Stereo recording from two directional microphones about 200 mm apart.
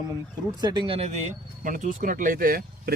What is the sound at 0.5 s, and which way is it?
Speech, 20° right (ahead or behind).